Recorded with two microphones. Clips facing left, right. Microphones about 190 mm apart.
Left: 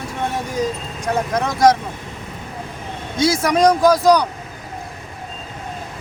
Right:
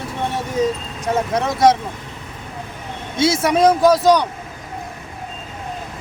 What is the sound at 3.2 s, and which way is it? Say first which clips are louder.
Speech: even; 25° right (ahead or behind).